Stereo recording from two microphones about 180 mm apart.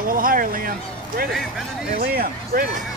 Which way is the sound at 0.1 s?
50° right (ahead or behind).